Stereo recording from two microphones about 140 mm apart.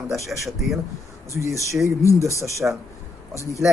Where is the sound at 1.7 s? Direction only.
20° right (ahead or behind).